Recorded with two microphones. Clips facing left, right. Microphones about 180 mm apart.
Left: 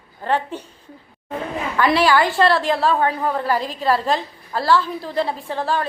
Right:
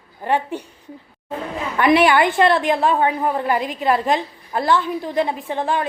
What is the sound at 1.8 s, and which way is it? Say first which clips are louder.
A woman's voice: right 2 dB; 20° right (ahead or behind).